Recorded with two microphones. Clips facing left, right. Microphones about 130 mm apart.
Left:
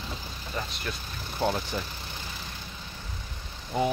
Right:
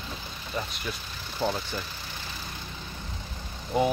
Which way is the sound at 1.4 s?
10° left (ahead or behind).